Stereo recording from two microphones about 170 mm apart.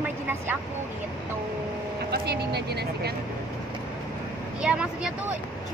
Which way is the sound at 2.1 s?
70° right (ahead or behind).